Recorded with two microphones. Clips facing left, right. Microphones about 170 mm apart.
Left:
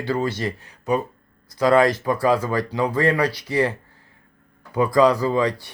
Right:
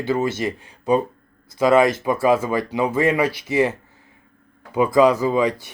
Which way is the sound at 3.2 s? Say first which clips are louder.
Right 2 dB; 20° right (ahead or behind).